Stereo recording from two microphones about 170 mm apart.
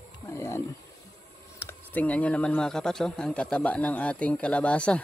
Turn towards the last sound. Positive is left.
turn(degrees=5)  # may be behind; listen again after turning